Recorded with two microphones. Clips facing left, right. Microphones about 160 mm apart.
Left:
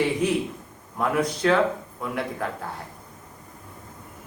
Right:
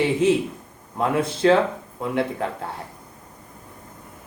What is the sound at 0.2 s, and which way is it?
A man's voice, 25° right (ahead or behind).